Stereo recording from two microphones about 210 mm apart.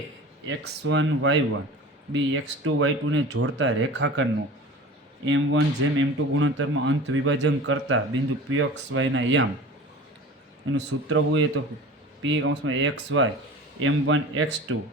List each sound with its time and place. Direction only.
0.4 s speech: 65° right (ahead or behind)
5.3 s speech: 65° right (ahead or behind)
10.8 s speech: 60° right (ahead or behind)